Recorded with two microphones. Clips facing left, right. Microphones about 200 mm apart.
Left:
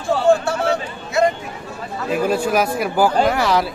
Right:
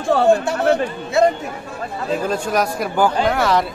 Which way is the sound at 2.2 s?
10° left (ahead or behind).